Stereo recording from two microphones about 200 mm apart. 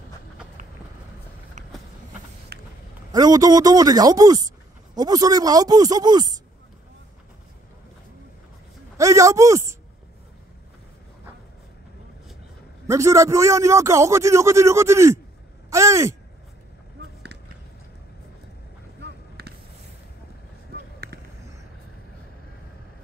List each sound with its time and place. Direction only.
1.6 s vehicle: 40° right (ahead or behind)
2.5 s a sound: 50° right (ahead or behind)
3.1 s speech: 20° right (ahead or behind)
8.9 s a man's voice: 15° right (ahead or behind)
12.8 s a man's voice: 15° right (ahead or behind)
18.9 s a sound: 55° right (ahead or behind)